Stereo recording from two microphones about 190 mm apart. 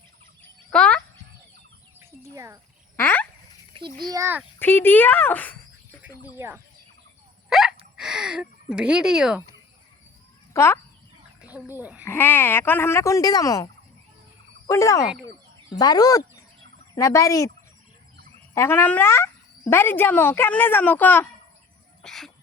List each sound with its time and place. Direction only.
0.7 s fowl: 5° left (ahead or behind)
2.0 s chicken: 15° right (ahead or behind)
2.9 s frog: 10° left (ahead or behind)
3.8 s a child's voice: 25° right (ahead or behind)
4.6 s speech: 10° left (ahead or behind)
7.5 s hiccup: centre (ahead or behind)
7.9 s speech: 5° right (ahead or behind)
10.5 s speech: 15° left (ahead or behind)
11.4 s speech: 10° right (ahead or behind)
12.0 s speech: 10° left (ahead or behind)
14.7 s speech: 15° left (ahead or behind)
18.5 s speech: 10° left (ahead or behind)